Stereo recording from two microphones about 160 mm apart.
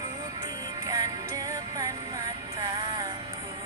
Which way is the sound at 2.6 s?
20° right (ahead or behind).